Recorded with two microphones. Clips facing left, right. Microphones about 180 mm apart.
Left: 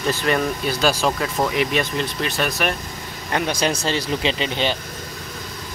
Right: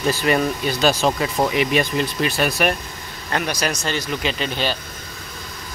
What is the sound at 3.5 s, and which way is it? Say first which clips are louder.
Speech: left 2 dB; 30° left (ahead or behind).